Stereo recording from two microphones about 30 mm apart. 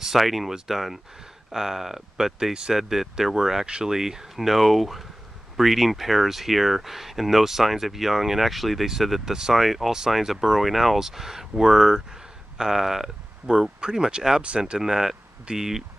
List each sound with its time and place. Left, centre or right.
0.0 s speech: centre
4.5 s speech: centre
11.0 s speech: centre
13.7 s speech: right